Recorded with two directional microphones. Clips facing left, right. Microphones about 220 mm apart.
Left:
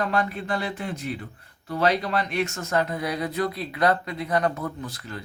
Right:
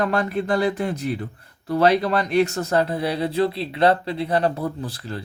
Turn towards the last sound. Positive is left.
turn(degrees=-30)  # may be behind; listen again after turning